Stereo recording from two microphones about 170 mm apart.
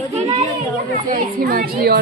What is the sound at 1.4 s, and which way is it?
Speech, 65° right (ahead or behind).